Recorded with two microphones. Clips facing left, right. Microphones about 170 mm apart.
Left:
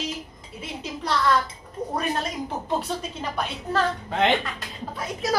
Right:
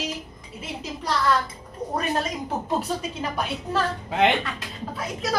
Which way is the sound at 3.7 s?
5° right (ahead or behind).